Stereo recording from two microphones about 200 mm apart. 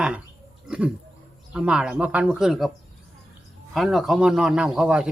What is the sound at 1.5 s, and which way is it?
Speech, 5° right (ahead or behind).